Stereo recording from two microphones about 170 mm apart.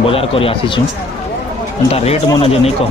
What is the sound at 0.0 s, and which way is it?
Speech, 35° left (ahead or behind).